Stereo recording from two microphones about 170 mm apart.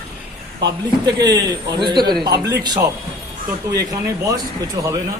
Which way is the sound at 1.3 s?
25° right (ahead or behind).